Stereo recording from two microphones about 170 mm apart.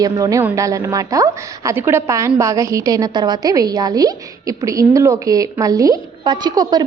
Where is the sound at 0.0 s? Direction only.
20° right (ahead or behind).